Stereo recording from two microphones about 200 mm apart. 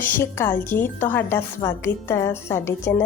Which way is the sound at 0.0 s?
10° left (ahead or behind).